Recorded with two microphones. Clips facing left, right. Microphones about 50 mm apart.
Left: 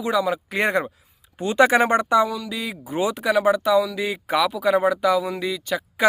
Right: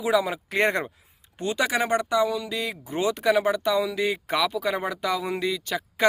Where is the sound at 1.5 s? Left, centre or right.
Left.